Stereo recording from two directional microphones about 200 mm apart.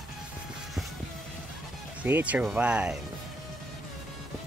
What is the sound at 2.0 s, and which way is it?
Speech, 10° right (ahead or behind).